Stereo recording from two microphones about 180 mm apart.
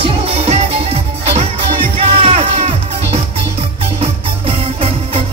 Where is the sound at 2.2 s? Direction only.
35° right (ahead or behind).